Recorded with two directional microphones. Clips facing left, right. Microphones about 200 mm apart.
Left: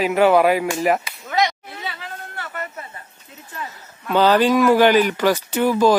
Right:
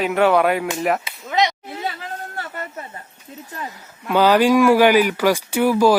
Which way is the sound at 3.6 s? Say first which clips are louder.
Left 2 dB; 10° right (ahead or behind).